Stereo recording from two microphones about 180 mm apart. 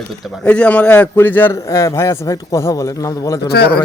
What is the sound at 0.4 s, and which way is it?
A man's voice, 5° left (ahead or behind).